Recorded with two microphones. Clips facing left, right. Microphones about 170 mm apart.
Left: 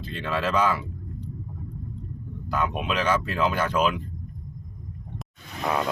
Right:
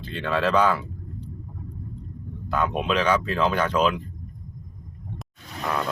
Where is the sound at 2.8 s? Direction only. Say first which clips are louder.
Right 2 dB; 5° left (ahead or behind).